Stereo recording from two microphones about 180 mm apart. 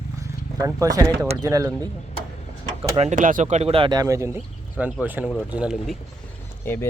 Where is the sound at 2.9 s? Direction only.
40° right (ahead or behind); by 6.0 s centre (ahead or behind).